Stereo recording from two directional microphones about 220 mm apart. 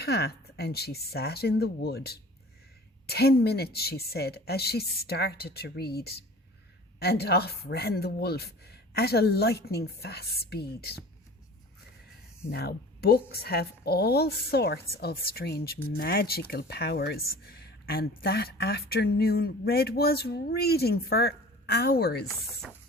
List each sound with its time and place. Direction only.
0.0 s a woman's voice: 45° left (ahead or behind)
12.5 s a woman's voice: 45° left (ahead or behind)